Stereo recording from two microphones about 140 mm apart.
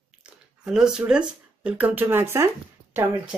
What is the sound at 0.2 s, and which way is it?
Speech, 5° right (ahead or behind).